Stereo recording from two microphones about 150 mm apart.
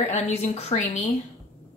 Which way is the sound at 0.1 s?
45° left (ahead or behind).